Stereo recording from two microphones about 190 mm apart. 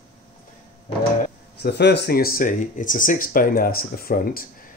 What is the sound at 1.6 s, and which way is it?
Speech, 60° left (ahead or behind).